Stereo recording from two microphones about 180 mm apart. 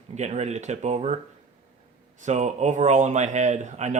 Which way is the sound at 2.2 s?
40° right (ahead or behind).